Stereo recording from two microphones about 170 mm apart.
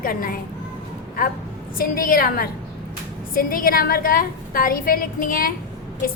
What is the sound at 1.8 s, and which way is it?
A woman's voice, 60° left (ahead or behind).